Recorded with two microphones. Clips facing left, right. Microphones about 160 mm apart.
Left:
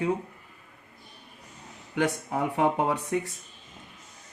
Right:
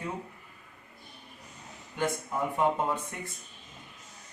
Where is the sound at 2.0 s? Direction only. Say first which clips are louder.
Left 4 dB; 70° left (ahead or behind).